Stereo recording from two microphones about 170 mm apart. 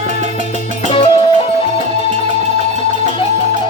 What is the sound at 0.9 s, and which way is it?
Music, 30° left (ahead or behind).